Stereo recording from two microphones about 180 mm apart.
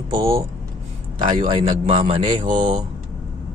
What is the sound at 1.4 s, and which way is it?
A man's voice, 30° right (ahead or behind).